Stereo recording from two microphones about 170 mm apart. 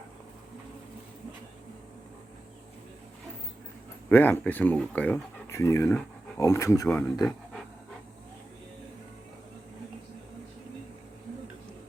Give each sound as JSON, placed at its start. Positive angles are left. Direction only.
{"t": 4.1, "sound": "speech", "side_deg": 10}